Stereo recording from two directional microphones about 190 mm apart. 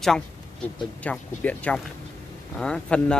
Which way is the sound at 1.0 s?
5° left (ahead or behind).